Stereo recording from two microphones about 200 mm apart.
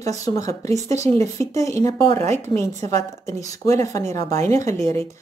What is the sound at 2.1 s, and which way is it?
Speech, 35° right (ahead or behind).